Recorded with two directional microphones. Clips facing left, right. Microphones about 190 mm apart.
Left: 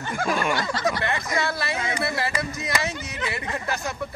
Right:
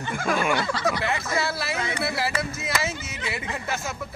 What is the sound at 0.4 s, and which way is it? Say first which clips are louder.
Speech: even; 5° right (ahead or behind).